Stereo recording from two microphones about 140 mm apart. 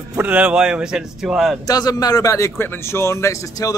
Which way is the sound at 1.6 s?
25° left (ahead or behind).